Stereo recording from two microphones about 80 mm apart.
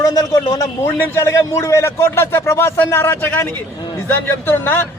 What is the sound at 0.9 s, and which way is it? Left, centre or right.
A man's voice, left.